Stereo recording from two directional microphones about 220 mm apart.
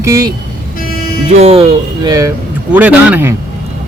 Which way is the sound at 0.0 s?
15° right (ahead or behind).